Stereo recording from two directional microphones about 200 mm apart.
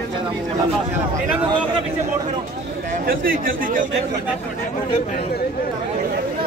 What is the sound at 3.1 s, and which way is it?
Speech, 45° right (ahead or behind).